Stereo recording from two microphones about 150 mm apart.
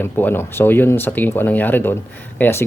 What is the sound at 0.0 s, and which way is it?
Speech, 15° left (ahead or behind).